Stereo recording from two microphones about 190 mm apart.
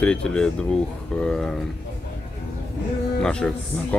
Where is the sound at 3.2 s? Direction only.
5° left (ahead or behind).